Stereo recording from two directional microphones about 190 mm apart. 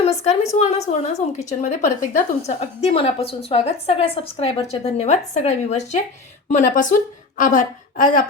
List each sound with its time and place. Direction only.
0.0 s a woman's voice: 35° left (ahead or behind)